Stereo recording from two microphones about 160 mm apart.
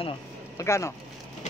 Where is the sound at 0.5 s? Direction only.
20° left (ahead or behind).